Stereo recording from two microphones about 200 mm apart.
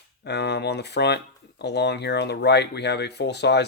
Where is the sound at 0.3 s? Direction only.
55° left (ahead or behind).